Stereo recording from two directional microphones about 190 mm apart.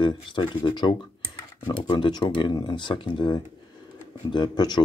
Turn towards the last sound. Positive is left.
turn(degrees=20)  # may be behind; listen again after turning